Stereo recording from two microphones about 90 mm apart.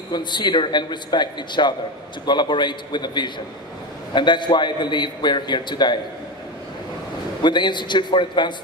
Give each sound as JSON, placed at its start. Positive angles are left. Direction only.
{"t": 0.1, "sound": "a man's voice", "side_deg": 55}
{"t": 7.4, "sound": "a man's voice", "side_deg": 55}